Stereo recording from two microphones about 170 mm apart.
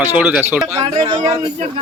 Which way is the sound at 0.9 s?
30° right (ahead or behind).